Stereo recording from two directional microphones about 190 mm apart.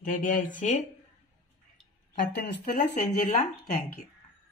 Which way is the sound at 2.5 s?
65° left (ahead or behind).